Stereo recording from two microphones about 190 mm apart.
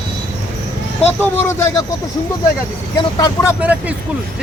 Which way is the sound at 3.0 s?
20° left (ahead or behind).